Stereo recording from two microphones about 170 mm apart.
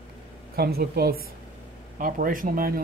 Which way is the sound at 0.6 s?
65° right (ahead or behind).